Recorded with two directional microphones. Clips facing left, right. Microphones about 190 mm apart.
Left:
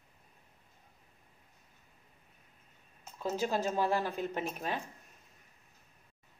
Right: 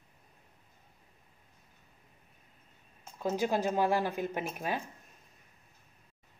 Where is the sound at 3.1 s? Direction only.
15° right (ahead or behind).